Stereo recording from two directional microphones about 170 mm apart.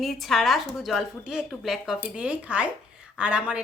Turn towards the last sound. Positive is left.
turn(degrees=-5)  # may be behind; listen again after turning